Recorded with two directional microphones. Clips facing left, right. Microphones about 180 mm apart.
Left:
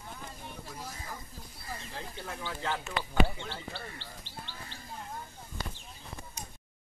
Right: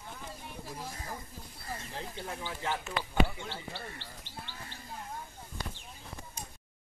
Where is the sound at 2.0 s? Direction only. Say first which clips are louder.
Right 1 dB; 20° right (ahead or behind).